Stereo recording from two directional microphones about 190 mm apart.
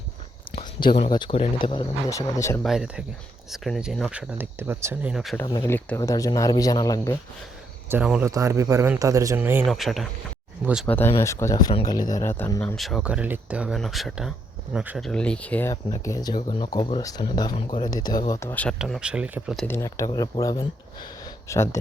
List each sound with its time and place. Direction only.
0.9 s speech: 25° left (ahead or behind)
2.6 s speech: 5° right (ahead or behind)
5.1 s speech: centre (ahead or behind)
5.4 s speech: 15° left (ahead or behind)
7.9 s speech: 5° right (ahead or behind)
9.6 s speech: centre (ahead or behind)
15.7 s speech: 20° left (ahead or behind)
18.8 s speech: 5° right (ahead or behind)
19.6 s speech: 15° left (ahead or behind)